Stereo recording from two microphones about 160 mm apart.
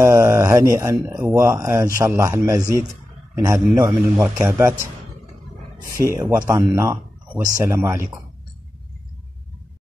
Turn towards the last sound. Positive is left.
turn(degrees=-20)  # may be behind; listen again after turning